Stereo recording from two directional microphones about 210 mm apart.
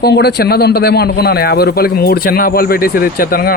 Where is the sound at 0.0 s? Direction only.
50° left (ahead or behind).